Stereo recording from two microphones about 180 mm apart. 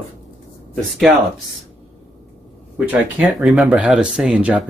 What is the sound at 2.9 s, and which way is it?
Speech, 5° right (ahead or behind).